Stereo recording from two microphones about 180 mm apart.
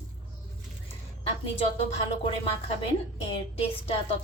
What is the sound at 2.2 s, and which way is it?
A woman's voice, 35° left (ahead or behind).